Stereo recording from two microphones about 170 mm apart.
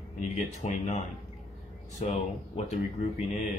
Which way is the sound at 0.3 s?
45° left (ahead or behind).